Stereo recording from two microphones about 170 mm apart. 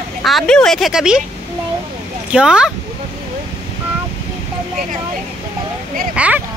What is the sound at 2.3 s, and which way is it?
Speech, 5° right (ahead or behind).